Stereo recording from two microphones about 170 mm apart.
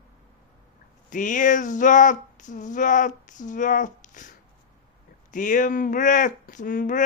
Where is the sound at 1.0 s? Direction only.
50° left (ahead or behind).